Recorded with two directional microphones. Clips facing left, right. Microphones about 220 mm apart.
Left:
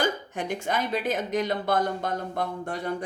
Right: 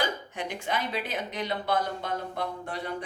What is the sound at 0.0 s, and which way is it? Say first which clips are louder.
Speech: left 4 dB; 45° left (ahead or behind).